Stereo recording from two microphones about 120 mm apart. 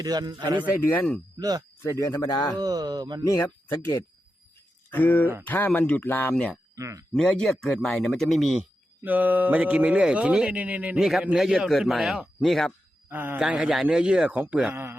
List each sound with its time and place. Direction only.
0.0 s a man's voice: 35° right (ahead or behind)
1.8 s speech: 25° left (ahead or behind)
2.6 s a man's voice: 35° right (ahead or behind)
3.2 s speech: 25° left (ahead or behind)
4.9 s speech: 15° left (ahead or behind)
6.7 s speech: 25° right (ahead or behind)
7.1 s speech: 5° left (ahead or behind)
9.0 s speech: 15° right (ahead or behind); by 12.7 s 5° left (ahead or behind)
13.1 s speech: 15° right (ahead or behind)